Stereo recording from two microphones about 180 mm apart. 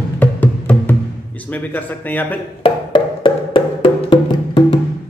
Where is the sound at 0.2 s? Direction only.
10° left (ahead or behind).